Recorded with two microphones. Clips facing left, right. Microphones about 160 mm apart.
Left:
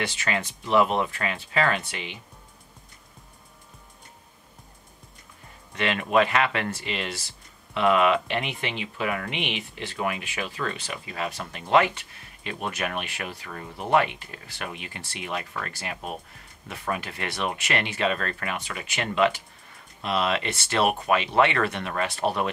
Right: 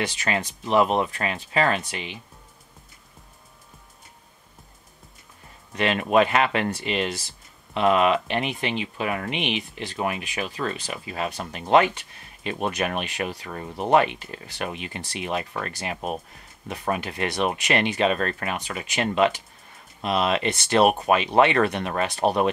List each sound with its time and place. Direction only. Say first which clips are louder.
0.2 s speech: right 2 dB; 20° right (ahead or behind)
1.1 s speech: right 2 dB; 30° right (ahead or behind)
5.9 s speech: right 2 dB; 20° right (ahead or behind)
10.5 s speech: right 2 dB; 25° right (ahead or behind)